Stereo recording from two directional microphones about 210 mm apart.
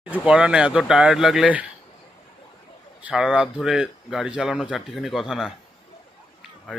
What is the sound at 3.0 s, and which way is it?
Speech, 5° right (ahead or behind).